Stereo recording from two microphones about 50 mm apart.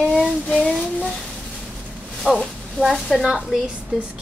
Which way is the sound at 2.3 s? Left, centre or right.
Centre.